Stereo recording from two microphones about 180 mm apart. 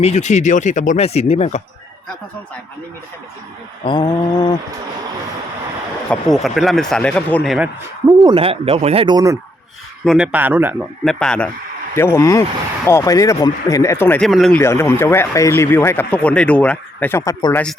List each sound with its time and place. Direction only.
0.0 s speech: 40° left (ahead or behind)
3.8 s mantra: 25° left (ahead or behind)
6.1 s speech: centre (ahead or behind)
8.2 s speech: 30° right (ahead or behind)
10.1 s speech: 5° right (ahead or behind)
11.0 s speech: 5° left (ahead or behind)
14.3 s speech: centre (ahead or behind)
14.6 s speech: 15° left (ahead or behind)